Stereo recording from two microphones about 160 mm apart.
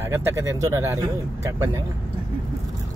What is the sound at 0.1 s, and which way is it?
Speech, 20° right (ahead or behind).